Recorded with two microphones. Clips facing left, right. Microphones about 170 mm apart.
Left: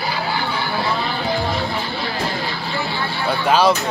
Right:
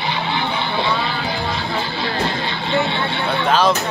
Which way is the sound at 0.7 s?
Centre (ahead or behind).